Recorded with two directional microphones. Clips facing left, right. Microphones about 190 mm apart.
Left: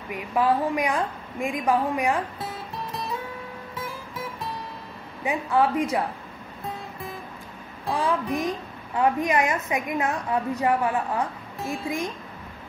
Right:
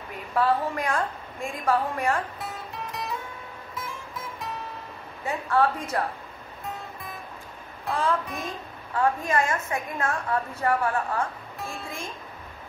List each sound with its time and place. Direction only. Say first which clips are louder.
0.1 s a woman's voice: left 2 dB; 15° left (ahead or behind)
5.2 s a woman's voice: left 1 dB; 10° left (ahead or behind)
7.9 s a woman's voice: left 2 dB; 15° left (ahead or behind)